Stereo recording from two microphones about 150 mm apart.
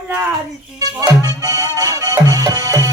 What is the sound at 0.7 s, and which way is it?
Music, 25° right (ahead or behind).